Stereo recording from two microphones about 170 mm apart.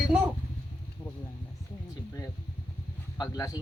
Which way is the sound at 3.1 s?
25° left (ahead or behind).